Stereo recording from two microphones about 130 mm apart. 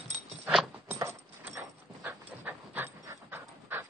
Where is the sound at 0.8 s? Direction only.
20° right (ahead or behind).